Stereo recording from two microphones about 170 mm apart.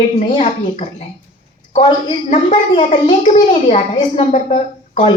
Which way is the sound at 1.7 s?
30° left (ahead or behind).